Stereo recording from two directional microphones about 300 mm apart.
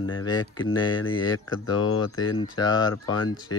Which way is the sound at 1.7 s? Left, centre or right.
Left.